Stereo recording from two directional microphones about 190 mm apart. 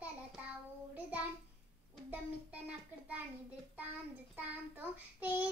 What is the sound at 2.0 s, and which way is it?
Speech, 10° right (ahead or behind).